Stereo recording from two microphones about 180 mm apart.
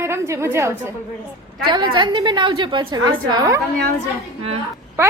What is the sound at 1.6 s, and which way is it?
A woman's voice, 25° right (ahead or behind).